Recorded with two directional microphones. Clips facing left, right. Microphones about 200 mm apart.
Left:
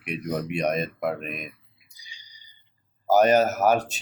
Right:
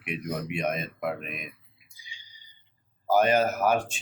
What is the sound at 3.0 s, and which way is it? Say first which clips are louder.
Speech: left 4 dB; 40° left (ahead or behind).